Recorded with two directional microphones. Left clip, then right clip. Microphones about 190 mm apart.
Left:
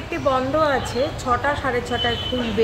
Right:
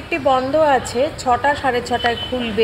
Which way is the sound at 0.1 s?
15° right (ahead or behind).